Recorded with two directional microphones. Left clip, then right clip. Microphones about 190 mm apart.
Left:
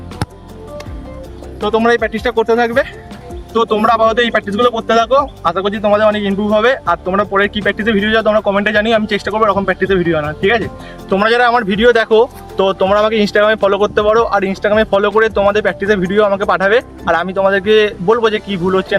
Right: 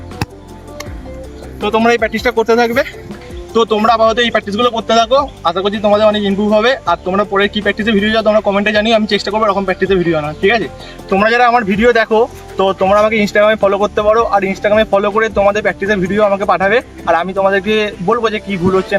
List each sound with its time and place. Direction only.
1.6 s a man's voice: 5° left (ahead or behind)
11.6 s speech: 25° left (ahead or behind)